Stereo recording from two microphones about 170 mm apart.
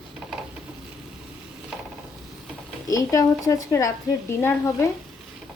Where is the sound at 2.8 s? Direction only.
20° left (ahead or behind).